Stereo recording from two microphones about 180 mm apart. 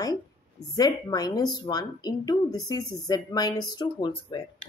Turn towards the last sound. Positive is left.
turn(degrees=25)  # may be behind; listen again after turning